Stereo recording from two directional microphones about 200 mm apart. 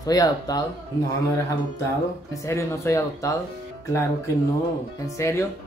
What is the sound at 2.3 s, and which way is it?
Speech, 15° left (ahead or behind).